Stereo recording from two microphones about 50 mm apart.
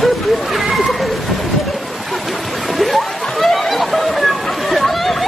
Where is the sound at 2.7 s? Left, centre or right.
Centre.